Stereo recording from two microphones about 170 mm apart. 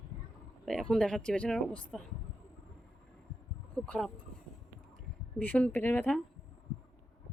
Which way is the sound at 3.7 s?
5° left (ahead or behind).